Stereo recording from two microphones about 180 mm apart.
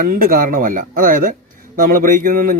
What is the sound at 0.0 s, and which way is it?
A man's voice, 50° right (ahead or behind).